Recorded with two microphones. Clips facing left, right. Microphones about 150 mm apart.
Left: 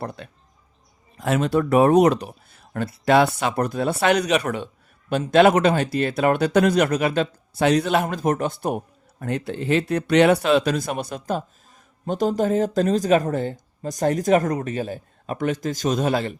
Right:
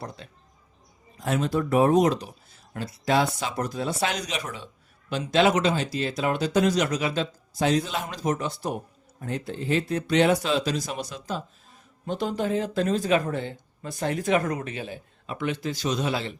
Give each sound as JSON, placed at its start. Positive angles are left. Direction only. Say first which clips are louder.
{"t": 0.0, "sound": "speech", "louder": "left 6 dB", "side_deg": 60}
{"t": 1.2, "sound": "speech", "louder": "left 5 dB", "side_deg": 80}
{"t": 9.2, "sound": "speech", "louder": "left 5 dB", "side_deg": 70}
{"t": 12.0, "sound": "speech", "louder": "left 6 dB", "side_deg": 40}